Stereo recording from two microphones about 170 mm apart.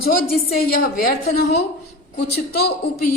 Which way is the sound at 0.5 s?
60° left (ahead or behind).